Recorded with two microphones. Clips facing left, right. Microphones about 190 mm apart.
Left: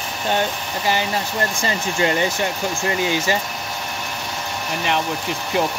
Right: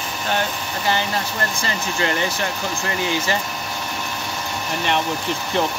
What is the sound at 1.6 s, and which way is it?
Speech, 20° left (ahead or behind).